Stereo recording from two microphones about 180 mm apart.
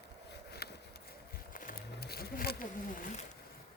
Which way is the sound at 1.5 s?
50° left (ahead or behind).